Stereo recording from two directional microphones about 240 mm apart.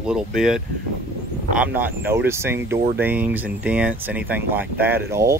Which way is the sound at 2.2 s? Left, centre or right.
Centre.